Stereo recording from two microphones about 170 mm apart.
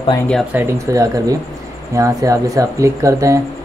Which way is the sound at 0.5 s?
20° right (ahead or behind).